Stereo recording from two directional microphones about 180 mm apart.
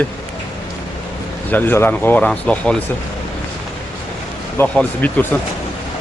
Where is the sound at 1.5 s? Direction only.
10° left (ahead or behind).